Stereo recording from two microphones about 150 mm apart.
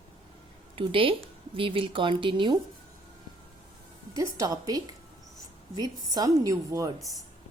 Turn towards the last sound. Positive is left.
turn(degrees=-20)  # may be behind; listen again after turning